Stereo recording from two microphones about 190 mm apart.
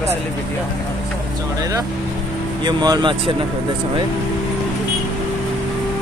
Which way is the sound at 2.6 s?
20° right (ahead or behind).